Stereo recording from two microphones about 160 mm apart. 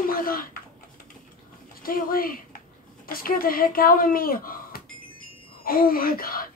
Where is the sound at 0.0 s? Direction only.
65° left (ahead or behind).